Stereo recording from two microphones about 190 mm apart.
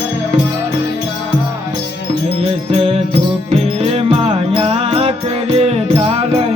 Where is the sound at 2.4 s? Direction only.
30° right (ahead or behind).